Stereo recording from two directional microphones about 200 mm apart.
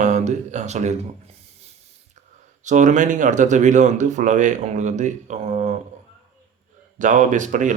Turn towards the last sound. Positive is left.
turn(degrees=-40)  # may be behind; listen again after turning